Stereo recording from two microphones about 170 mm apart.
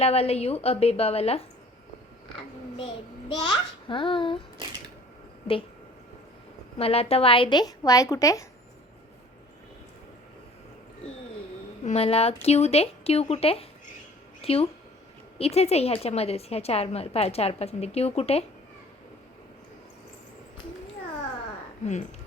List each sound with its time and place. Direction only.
0.0 s a woman's voice: 35° left (ahead or behind)
6.7 s a woman's voice: 35° left (ahead or behind); by 8.4 s 20° left (ahead or behind)
11.8 s a woman's voice: 40° left (ahead or behind)